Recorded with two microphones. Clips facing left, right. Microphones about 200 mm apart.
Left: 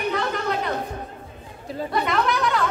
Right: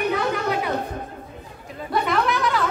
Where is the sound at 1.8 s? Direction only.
Centre (ahead or behind).